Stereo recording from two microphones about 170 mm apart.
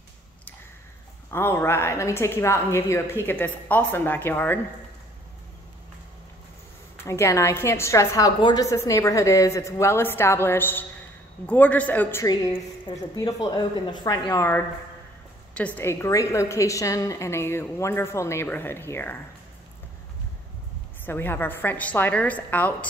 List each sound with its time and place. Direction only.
1.3 s a woman's voice: 15° left (ahead or behind)
7.1 s a woman's voice: 15° left (ahead or behind)
15.5 s a woman's voice: 10° left (ahead or behind)
21.0 s a woman's voice: 10° left (ahead or behind)